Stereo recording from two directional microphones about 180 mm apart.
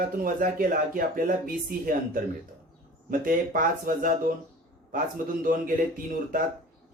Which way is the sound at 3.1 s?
50° right (ahead or behind).